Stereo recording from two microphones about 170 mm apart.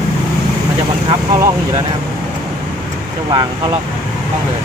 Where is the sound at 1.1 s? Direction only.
25° right (ahead or behind).